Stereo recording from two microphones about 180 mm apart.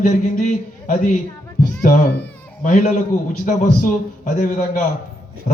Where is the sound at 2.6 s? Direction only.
45° left (ahead or behind).